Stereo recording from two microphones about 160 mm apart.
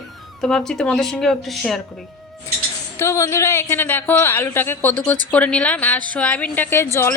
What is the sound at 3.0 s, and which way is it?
A woman's voice, 15° left (ahead or behind).